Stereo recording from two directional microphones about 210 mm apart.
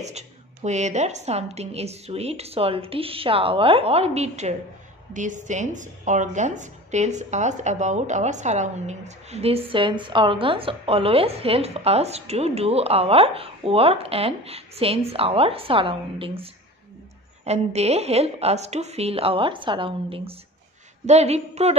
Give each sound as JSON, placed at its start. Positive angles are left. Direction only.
{"t": 0.0, "sound": "a woman's voice", "side_deg": -35}
{"t": 17.5, "sound": "a woman's voice", "side_deg": -30}